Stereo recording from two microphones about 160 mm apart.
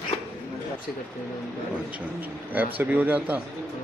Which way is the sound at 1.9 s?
10° right (ahead or behind).